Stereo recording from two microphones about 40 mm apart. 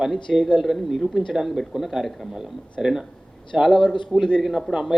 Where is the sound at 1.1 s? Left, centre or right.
Centre.